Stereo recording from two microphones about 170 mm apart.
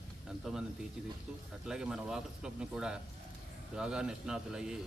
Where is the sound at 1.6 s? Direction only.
5° right (ahead or behind).